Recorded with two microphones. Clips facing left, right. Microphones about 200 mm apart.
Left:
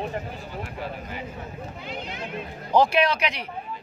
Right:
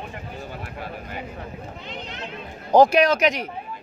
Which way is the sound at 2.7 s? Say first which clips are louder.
Right 5 dB; 45° right (ahead or behind).